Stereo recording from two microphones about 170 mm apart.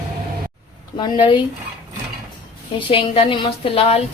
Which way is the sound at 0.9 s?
25° left (ahead or behind).